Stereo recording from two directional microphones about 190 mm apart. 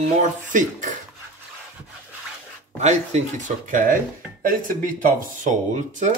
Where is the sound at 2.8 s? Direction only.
35° right (ahead or behind).